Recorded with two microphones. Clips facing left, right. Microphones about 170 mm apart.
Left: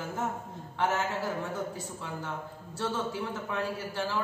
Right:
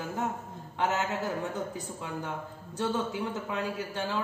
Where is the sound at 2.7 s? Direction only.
15° right (ahead or behind).